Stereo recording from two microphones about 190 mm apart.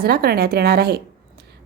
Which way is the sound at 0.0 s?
55° right (ahead or behind).